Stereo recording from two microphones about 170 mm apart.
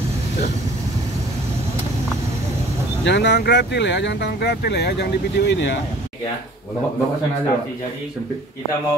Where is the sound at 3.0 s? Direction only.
90° left.